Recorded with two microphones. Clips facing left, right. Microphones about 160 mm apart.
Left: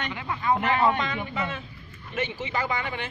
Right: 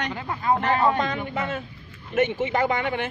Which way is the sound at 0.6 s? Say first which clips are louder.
Right 2 dB; 40° right (ahead or behind).